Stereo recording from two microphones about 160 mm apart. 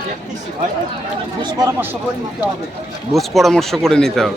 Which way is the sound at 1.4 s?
25° right (ahead or behind).